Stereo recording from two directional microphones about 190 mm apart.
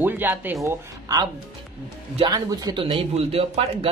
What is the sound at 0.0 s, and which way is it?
Speech, 10° right (ahead or behind).